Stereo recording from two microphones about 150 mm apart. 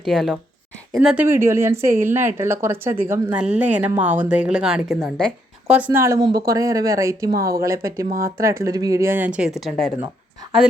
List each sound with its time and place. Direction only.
0.0 s a woman's voice: centre (ahead or behind)
5.7 s a woman's voice: 15° right (ahead or behind)